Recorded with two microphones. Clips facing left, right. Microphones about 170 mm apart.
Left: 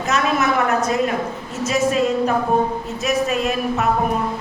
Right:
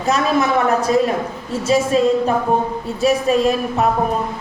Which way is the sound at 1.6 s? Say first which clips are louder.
Right 3 dB; 30° right (ahead or behind).